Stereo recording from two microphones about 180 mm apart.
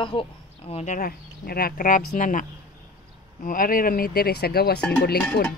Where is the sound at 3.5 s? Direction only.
50° left (ahead or behind).